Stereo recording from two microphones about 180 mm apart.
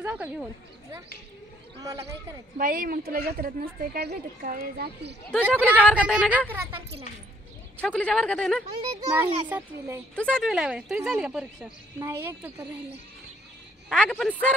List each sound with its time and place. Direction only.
0.0 s speech: 10° right (ahead or behind)
2.5 s speech: 50° right (ahead or behind)
5.6 s a child's voice: 10° right (ahead or behind)
7.8 s a woman's voice: 5° left (ahead or behind)
9.0 s a child's voice: 10° right (ahead or behind)
10.1 s a woman's voice: 5° left (ahead or behind); by 12.6 s 15° right (ahead or behind)
13.8 s a woman's voice: 5° left (ahead or behind)